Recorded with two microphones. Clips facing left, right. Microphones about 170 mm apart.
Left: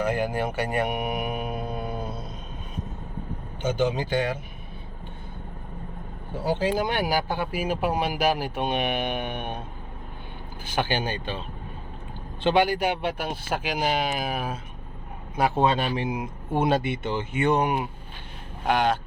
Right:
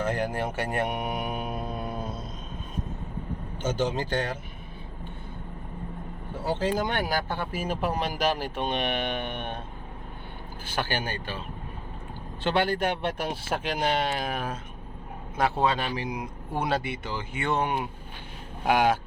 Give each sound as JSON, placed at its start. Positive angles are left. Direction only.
{"t": 0.0, "sound": "speech", "side_deg": 10}
{"t": 3.6, "sound": "speech", "side_deg": 0}
{"t": 6.5, "sound": "speech", "side_deg": 5}
{"t": 10.8, "sound": "speech", "side_deg": 20}
{"t": 12.5, "sound": "speech", "side_deg": 15}
{"t": 18.6, "sound": "speech", "side_deg": -10}